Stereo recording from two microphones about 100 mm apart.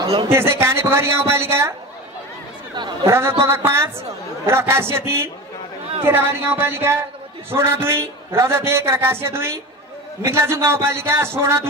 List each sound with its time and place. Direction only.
0.3 s a man's voice: 25° right (ahead or behind)
3.1 s a man's voice: 25° right (ahead or behind)